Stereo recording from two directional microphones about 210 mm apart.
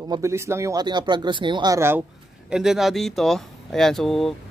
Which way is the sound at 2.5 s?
5° right (ahead or behind).